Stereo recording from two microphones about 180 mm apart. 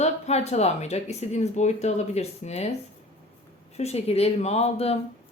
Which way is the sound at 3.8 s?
35° left (ahead or behind).